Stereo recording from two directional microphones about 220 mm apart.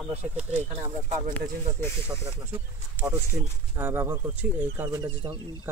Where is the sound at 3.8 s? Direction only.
10° right (ahead or behind).